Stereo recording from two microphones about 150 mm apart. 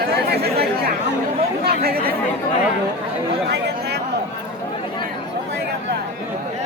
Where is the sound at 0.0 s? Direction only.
90° right.